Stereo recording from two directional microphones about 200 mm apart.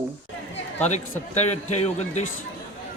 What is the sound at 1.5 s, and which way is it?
Speech, 35° left (ahead or behind).